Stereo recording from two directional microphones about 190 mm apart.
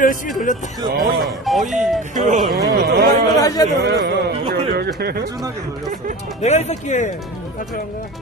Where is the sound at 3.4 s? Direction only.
20° left (ahead or behind).